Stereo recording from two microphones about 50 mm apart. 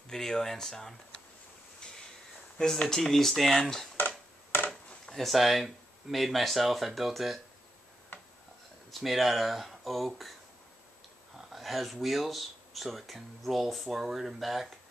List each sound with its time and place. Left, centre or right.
0.1 s speech: centre
2.7 s speech: centre
4.6 s chop: left
5.1 s speech: centre
8.9 s speech: centre
11.3 s speech: centre